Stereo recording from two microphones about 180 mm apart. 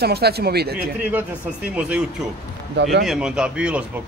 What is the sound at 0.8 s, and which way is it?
Speech, 10° right (ahead or behind).